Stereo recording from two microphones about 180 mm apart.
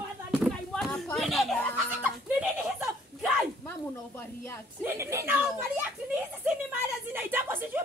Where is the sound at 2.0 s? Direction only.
5° right (ahead or behind).